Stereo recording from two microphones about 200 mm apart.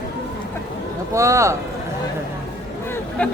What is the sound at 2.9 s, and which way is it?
Hubbub, 5° left (ahead or behind).